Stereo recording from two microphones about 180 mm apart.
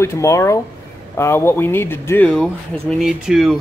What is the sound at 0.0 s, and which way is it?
Speech, 15° left (ahead or behind).